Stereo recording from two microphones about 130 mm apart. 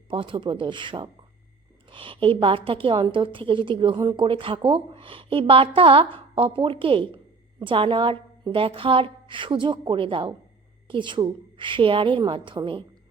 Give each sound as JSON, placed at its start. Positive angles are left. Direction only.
{"t": 0.1, "sound": "a woman's voice", "side_deg": -40}